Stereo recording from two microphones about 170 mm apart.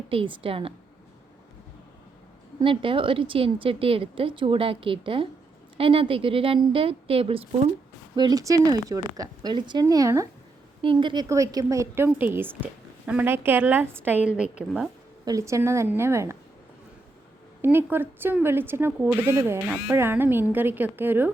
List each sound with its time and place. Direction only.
0.1 s speech: 30° right (ahead or behind)
2.6 s a woman's voice: 30° right (ahead or behind)
10.8 s a woman's voice: 30° right (ahead or behind); by 14.5 s 5° right (ahead or behind)
15.2 s a woman's voice: 20° right (ahead or behind)
17.6 s a woman's voice: 15° right (ahead or behind)